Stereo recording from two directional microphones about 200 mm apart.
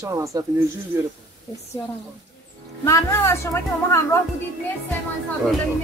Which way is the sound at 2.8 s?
15° left (ahead or behind).